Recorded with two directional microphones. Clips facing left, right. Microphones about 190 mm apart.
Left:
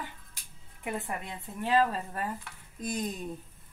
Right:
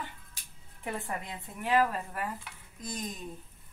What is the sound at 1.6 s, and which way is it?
Speech, 30° left (ahead or behind).